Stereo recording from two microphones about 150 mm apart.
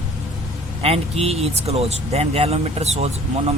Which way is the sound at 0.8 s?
40° right (ahead or behind).